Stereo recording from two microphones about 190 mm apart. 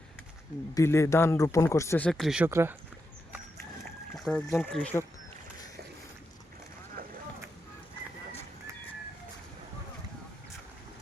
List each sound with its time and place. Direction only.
0.7 s speech: 15° left (ahead or behind)
2.0 s speech: centre (ahead or behind)
2.5 s speech: 15° right (ahead or behind)
3.8 s a sound: 5° left (ahead or behind)
4.5 s speech: centre (ahead or behind)
7.0 s vehicle: 50° right (ahead or behind)